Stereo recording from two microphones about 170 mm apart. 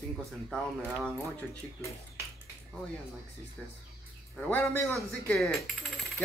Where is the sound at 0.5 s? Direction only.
5° left (ahead or behind).